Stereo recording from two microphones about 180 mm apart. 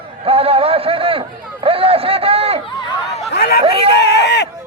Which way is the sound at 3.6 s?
30° right (ahead or behind).